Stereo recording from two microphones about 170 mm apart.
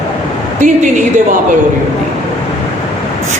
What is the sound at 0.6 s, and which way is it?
Speech, 45° right (ahead or behind).